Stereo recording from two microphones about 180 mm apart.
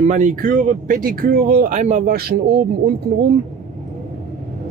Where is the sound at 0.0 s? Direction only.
40° right (ahead or behind).